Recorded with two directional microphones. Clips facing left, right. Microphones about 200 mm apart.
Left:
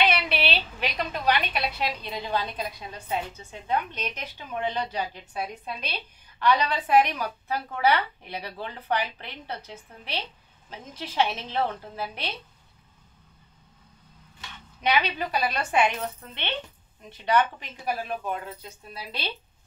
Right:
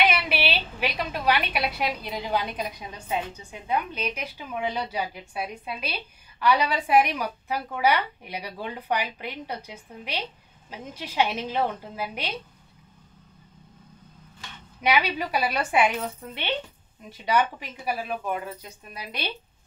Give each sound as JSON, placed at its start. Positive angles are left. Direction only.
{"t": 0.0, "sound": "a woman's voice", "side_deg": -10}
{"t": 14.8, "sound": "a woman's voice", "side_deg": -10}